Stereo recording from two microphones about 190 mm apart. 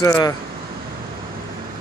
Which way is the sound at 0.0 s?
15° left (ahead or behind).